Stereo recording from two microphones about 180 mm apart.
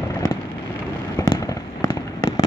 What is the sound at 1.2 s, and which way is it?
Fireworks, 20° left (ahead or behind).